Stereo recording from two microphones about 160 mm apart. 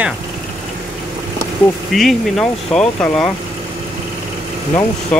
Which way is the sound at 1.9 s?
Centre (ahead or behind).